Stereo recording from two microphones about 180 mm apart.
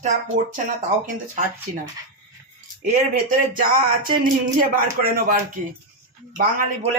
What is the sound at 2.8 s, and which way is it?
Speech, 50° right (ahead or behind).